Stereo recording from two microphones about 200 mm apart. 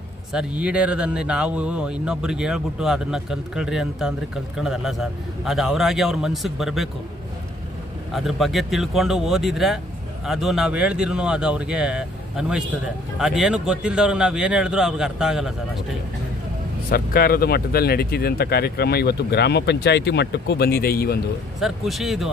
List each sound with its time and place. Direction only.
0.3 s a man's voice: 5° right (ahead or behind)
8.1 s a man's voice: centre (ahead or behind)
16.9 s speech: 50° left (ahead or behind)
21.5 s a man's voice: centre (ahead or behind)